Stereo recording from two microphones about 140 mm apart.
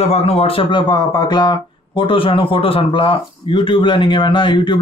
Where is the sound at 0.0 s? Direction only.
45° left (ahead or behind).